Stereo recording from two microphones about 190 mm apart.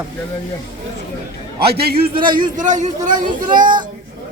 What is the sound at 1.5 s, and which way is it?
A man's voice, 55° right (ahead or behind).